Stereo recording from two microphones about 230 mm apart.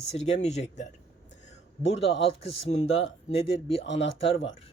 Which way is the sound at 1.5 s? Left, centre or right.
Left.